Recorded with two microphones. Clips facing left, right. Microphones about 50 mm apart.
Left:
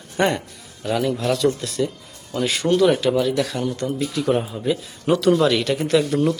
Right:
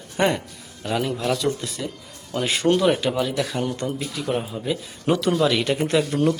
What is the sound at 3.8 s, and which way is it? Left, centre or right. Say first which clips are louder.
A man's voice: left 5 dB; centre.